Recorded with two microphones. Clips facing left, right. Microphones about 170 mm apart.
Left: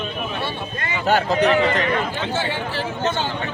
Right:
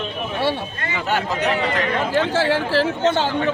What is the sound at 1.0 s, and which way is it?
Speech, 35° left (ahead or behind).